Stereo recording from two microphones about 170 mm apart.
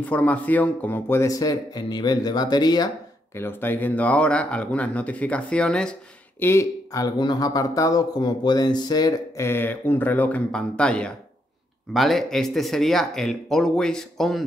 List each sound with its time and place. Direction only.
0.0 s speech: 10° left (ahead or behind)
3.3 s speech: 15° left (ahead or behind)
6.4 s speech: 15° left (ahead or behind)